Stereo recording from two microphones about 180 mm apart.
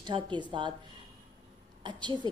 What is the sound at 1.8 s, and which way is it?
Speech, 25° right (ahead or behind).